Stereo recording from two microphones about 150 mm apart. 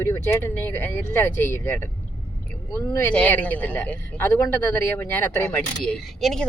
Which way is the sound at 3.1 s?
10° left (ahead or behind).